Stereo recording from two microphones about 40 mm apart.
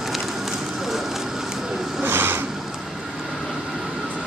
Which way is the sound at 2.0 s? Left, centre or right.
Right.